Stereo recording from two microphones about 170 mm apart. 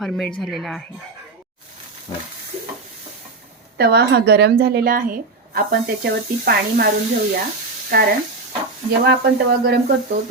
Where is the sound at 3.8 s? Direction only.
70° right (ahead or behind).